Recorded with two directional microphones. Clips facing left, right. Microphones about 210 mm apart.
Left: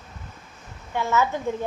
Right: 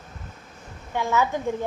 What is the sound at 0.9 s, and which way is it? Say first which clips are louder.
Speech: even; 15° right (ahead or behind).